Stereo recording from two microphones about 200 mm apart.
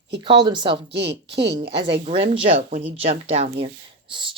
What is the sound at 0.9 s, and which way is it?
Speech, 60° right (ahead or behind).